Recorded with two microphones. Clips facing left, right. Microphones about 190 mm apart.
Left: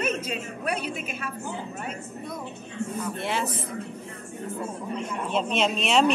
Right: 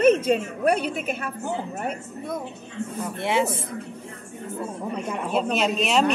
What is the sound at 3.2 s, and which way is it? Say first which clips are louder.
Speech: right 8 dB; 20° right (ahead or behind).